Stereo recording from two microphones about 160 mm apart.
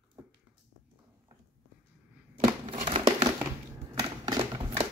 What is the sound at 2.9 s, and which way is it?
Crumpling, 35° right (ahead or behind).